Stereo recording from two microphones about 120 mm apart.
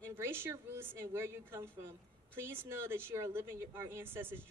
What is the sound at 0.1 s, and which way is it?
Speech, 20° right (ahead or behind).